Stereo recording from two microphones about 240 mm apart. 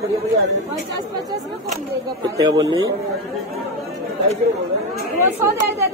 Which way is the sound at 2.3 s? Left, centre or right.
Centre.